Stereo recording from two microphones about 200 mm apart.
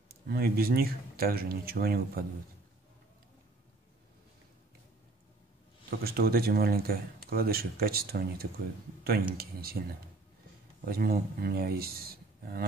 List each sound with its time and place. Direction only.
0.3 s speech: 50° right (ahead or behind)
5.9 s speech: 50° right (ahead or behind)
10.9 s speech: 50° right (ahead or behind)